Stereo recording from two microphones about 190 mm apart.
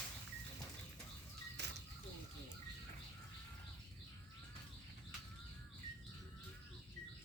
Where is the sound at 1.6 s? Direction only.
65° right (ahead or behind).